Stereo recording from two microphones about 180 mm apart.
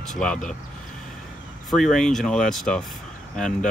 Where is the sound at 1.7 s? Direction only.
Centre (ahead or behind).